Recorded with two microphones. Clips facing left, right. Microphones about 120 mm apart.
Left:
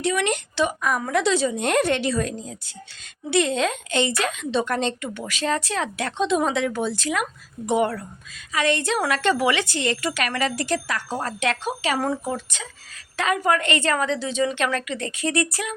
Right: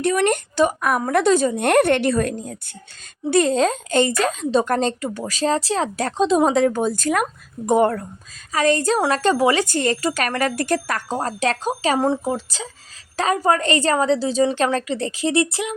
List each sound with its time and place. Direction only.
0.0 s a woman's voice: 50° right (ahead or behind)
3.2 s a woman's voice: 45° right (ahead or behind)
11.1 s speech: 35° right (ahead or behind)